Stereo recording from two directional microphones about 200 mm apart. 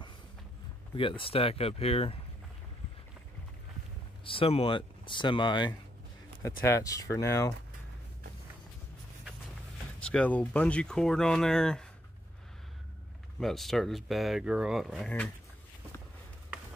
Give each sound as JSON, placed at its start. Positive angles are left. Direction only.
{"t": 0.9, "sound": "speech", "side_deg": 25}
{"t": 4.2, "sound": "speech", "side_deg": 25}
{"t": 9.9, "sound": "speech", "side_deg": 5}
{"t": 13.4, "sound": "speech", "side_deg": 0}